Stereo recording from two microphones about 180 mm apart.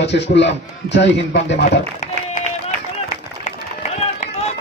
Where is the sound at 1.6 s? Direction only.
45° left (ahead or behind).